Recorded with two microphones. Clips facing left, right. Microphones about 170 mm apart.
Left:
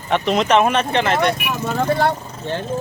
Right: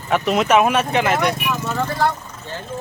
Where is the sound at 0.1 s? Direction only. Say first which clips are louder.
Even; 5° right (ahead or behind).